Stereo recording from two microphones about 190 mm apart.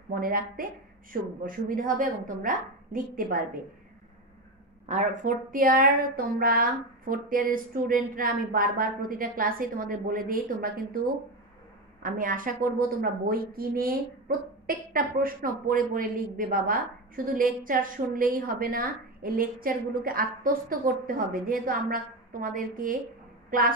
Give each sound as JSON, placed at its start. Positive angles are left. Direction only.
{"t": 0.1, "sound": "a woman's voice", "side_deg": -50}
{"t": 4.8, "sound": "a woman's voice", "side_deg": -40}
{"t": 12.0, "sound": "a woman's voice", "side_deg": -45}